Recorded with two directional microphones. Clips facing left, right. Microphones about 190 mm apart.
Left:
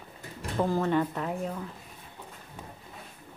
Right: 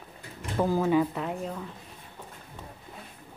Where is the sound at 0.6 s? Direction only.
5° right (ahead or behind).